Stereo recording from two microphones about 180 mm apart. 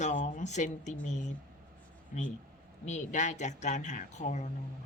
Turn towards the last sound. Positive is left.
turn(degrees=40)  # may be behind; listen again after turning